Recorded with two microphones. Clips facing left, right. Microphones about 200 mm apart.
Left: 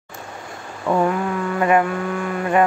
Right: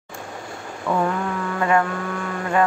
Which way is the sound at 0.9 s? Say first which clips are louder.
Left 3 dB; 20° left (ahead or behind).